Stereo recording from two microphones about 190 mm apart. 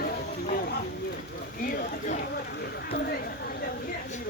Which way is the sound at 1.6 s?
50° left (ahead or behind).